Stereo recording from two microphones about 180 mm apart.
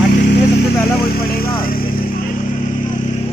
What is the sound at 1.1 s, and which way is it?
Vehicle, 55° left (ahead or behind).